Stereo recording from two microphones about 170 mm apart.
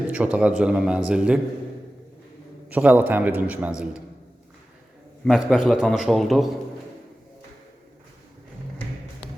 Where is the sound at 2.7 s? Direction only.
10° right (ahead or behind).